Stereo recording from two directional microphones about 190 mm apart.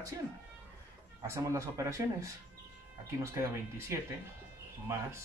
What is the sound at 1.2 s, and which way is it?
Speech, 15° right (ahead or behind).